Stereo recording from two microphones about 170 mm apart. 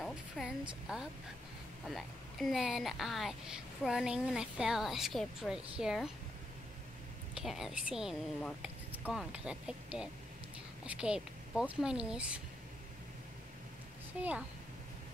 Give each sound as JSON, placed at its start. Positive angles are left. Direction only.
{"t": 0.0, "sound": "a woman's voice", "side_deg": 0}
{"t": 7.3, "sound": "a woman's voice", "side_deg": 0}
{"t": 14.2, "sound": "a woman's voice", "side_deg": -5}